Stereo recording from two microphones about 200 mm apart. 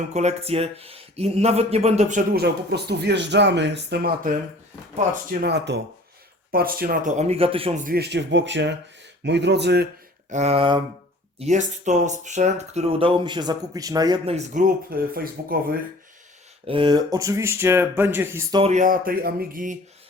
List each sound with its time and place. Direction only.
0.1 s speech: 35° right (ahead or behind)
2.4 s speech: 55° right (ahead or behind); by 7.7 s 30° right (ahead or behind)
7.9 s speech: 55° right (ahead or behind)
10.2 s speech: 35° right (ahead or behind); by 14.2 s 20° right (ahead or behind)
14.3 s speech: 40° right (ahead or behind)
16.6 s speech: 25° right (ahead or behind)
18.6 s speech: 35° right (ahead or behind)